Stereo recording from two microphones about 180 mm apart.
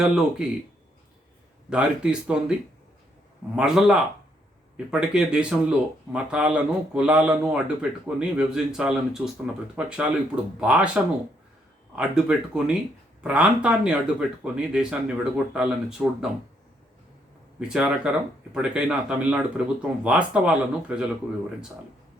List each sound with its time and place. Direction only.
0.0 s a man's voice: 5° right (ahead or behind)
1.7 s a man's voice: 5° right (ahead or behind)
17.6 s a man's voice: 5° right (ahead or behind)